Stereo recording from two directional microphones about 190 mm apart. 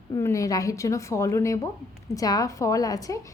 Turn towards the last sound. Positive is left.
turn(degrees=20)  # may be behind; listen again after turning